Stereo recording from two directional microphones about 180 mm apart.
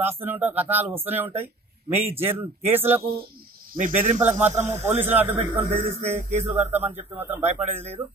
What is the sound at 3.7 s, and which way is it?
Speech, 50° right (ahead or behind).